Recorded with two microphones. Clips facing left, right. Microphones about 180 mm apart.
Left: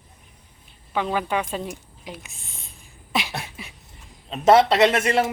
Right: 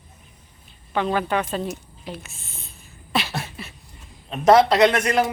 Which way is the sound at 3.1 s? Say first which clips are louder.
Right 2 dB; 15° left (ahead or behind).